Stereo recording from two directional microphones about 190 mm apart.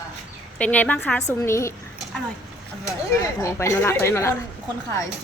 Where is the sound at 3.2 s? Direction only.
15° left (ahead or behind).